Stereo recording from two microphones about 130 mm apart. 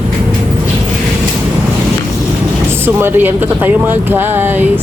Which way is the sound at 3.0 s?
15° right (ahead or behind).